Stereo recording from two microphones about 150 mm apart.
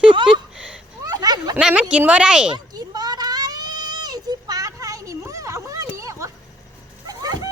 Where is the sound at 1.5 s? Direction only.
10° right (ahead or behind).